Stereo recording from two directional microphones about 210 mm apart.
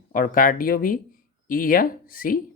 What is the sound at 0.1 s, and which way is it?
Speech, 40° left (ahead or behind).